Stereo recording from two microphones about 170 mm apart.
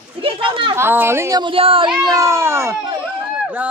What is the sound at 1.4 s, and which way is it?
Speech, 30° right (ahead or behind).